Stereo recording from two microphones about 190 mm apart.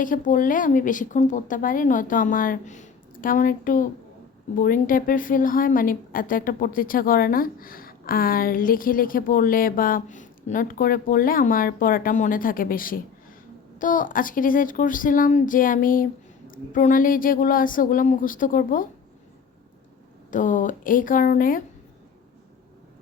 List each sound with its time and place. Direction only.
0.0 s a woman's voice: 45° left (ahead or behind)
20.3 s a woman's voice: 45° left (ahead or behind)